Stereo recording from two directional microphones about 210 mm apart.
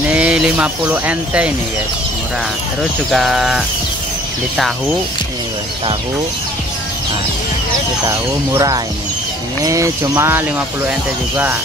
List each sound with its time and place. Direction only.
0.1 s speech: 5° right (ahead or behind)
3.1 s speech: centre (ahead or behind)
8.1 s speech: 15° right (ahead or behind)